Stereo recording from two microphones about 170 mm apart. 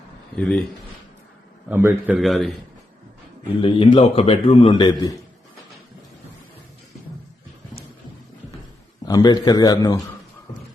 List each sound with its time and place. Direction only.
0.3 s a man's voice: 5° left (ahead or behind)
1.7 s a man's voice: 15° right (ahead or behind)
2.1 s a man's voice: centre (ahead or behind)
3.6 s a man's voice: 30° left (ahead or behind)
9.0 s a man's voice: 25° left (ahead or behind)